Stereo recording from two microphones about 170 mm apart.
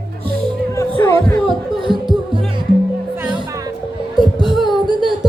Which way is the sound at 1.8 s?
Centre (ahead or behind).